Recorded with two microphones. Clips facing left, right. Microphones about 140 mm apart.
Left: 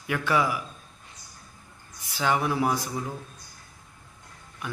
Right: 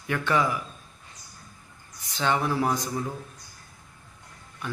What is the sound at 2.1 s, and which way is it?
Speech, 10° left (ahead or behind).